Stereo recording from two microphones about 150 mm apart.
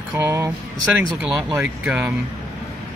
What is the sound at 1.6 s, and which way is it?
Speech, 5° right (ahead or behind).